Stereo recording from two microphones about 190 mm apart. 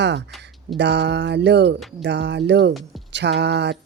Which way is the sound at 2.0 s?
65° right (ahead or behind).